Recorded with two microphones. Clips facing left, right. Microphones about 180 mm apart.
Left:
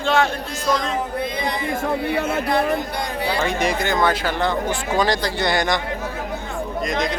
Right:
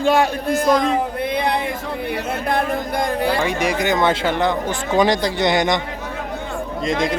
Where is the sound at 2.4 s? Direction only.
50° right (ahead or behind).